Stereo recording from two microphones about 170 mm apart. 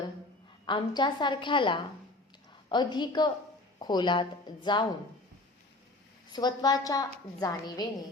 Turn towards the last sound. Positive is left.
turn(degrees=25)  # may be behind; listen again after turning